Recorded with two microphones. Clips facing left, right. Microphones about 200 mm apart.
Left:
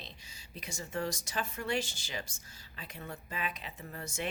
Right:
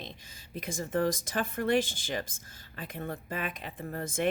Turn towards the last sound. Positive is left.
turn(degrees=-50)  # may be behind; listen again after turning